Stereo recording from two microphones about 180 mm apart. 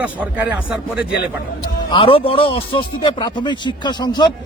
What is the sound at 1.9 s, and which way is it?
Speech, 30° left (ahead or behind).